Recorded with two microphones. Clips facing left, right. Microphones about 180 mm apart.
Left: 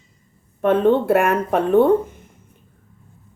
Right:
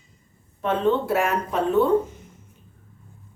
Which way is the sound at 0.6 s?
55° left (ahead or behind).